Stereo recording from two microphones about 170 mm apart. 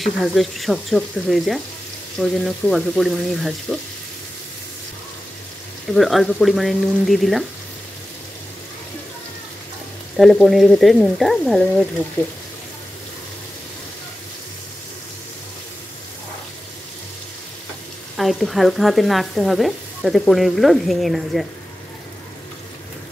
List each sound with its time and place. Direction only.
0.0 s sizzle: centre (ahead or behind)
5.9 s sizzle: centre (ahead or behind)
10.1 s sizzle: centre (ahead or behind)
18.1 s sizzle: centre (ahead or behind)